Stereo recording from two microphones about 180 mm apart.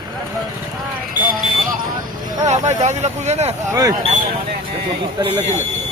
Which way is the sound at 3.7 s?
20° right (ahead or behind).